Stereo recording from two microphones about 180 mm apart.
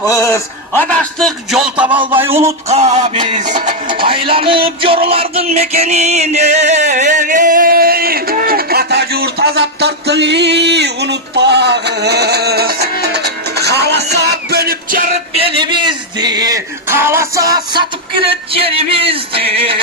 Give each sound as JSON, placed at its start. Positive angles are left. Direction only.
{"t": 0.0, "sound": "a man's voice", "side_deg": 15}
{"t": 2.1, "sound": "a sound", "side_deg": -15}
{"t": 2.6, "sound": "music", "side_deg": -40}
{"t": 5.0, "sound": "a sound", "side_deg": -30}
{"t": 15.4, "sound": "a man's voice", "side_deg": -30}
{"t": 16.2, "sound": "music", "side_deg": -20}